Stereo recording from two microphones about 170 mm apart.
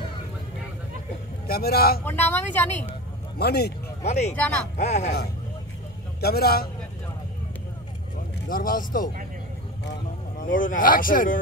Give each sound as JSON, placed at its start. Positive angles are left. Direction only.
{"t": 1.5, "sound": "speech", "side_deg": 65}
{"t": 2.0, "sound": "speech", "side_deg": 10}
{"t": 3.3, "sound": "speech", "side_deg": 70}
{"t": 4.0, "sound": "speech", "side_deg": 40}
{"t": 6.2, "sound": "speech", "side_deg": 65}
{"t": 8.5, "sound": "speech", "side_deg": 55}
{"t": 10.4, "sound": "speech", "side_deg": 50}